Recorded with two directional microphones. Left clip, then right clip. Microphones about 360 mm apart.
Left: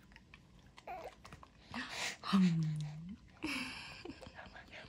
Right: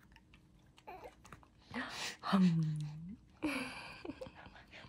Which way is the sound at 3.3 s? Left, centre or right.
Centre.